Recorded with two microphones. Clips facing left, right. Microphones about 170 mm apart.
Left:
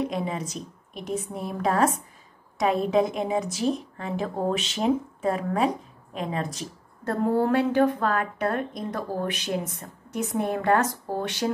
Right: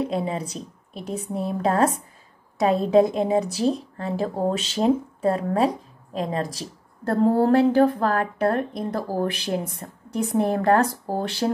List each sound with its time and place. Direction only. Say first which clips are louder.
0.0 s a woman's voice: right 3 dB; 30° right (ahead or behind)